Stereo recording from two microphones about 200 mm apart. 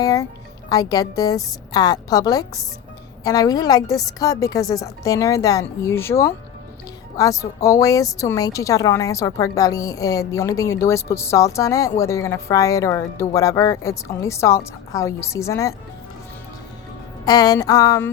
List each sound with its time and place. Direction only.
0.0 s a woman's voice: 15° left (ahead or behind)
17.2 s a woman's voice: 20° left (ahead or behind)